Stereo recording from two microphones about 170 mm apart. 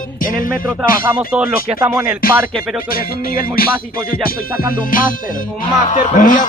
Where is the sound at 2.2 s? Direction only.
60° left (ahead or behind).